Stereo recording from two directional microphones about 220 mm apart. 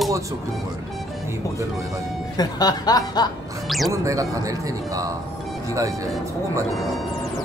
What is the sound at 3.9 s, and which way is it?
Speech, 15° right (ahead or behind).